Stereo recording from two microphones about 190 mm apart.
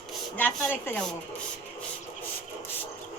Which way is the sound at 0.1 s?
5° left (ahead or behind).